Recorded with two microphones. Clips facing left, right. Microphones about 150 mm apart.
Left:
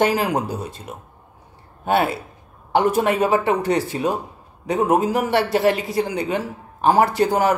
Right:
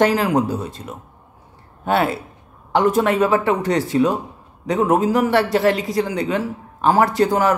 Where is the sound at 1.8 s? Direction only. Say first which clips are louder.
Right 1 dB; 15° left (ahead or behind).